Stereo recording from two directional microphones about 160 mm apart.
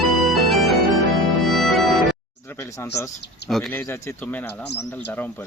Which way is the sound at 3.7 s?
15° left (ahead or behind).